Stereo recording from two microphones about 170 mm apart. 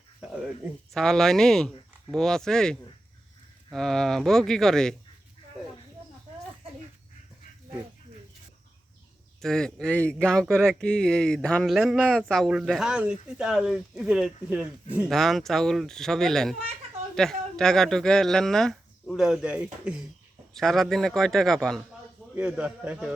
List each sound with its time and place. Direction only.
0.9 s speech: centre (ahead or behind)
9.4 s a man's voice: 5° left (ahead or behind)